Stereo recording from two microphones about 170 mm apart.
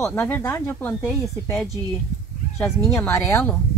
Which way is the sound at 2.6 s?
Centre (ahead or behind).